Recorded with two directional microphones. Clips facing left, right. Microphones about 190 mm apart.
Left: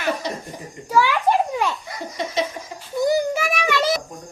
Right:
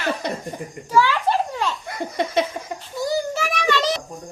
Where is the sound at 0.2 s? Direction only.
55° right (ahead or behind).